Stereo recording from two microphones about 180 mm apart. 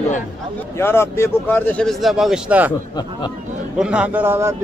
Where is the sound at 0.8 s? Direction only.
15° left (ahead or behind); by 2.7 s 10° right (ahead or behind).